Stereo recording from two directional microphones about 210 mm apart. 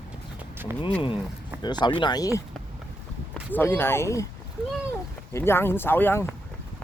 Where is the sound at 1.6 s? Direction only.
20° left (ahead or behind).